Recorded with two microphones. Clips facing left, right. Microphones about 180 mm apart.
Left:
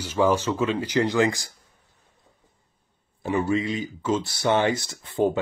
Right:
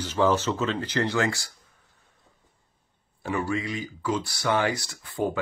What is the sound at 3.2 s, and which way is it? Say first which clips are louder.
Speech: left 4 dB; 20° left (ahead or behind).